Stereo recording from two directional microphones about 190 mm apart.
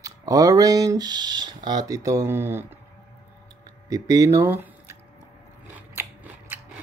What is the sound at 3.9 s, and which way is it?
Speech, 20° right (ahead or behind).